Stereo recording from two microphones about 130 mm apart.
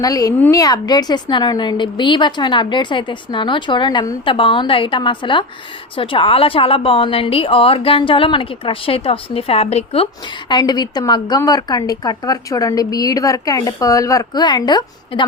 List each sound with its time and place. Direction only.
0.0 s a woman's voice: 30° left (ahead or behind); by 10.1 s 50° left (ahead or behind)
10.5 s a woman's voice: 35° left (ahead or behind)